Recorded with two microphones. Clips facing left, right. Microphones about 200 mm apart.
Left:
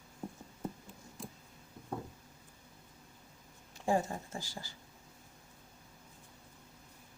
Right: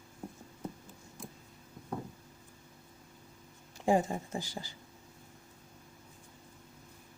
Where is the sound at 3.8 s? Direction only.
15° right (ahead or behind).